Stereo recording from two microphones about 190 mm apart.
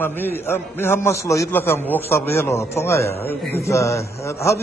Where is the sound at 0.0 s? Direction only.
10° left (ahead or behind).